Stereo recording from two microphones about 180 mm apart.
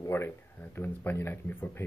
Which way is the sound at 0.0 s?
15° left (ahead or behind).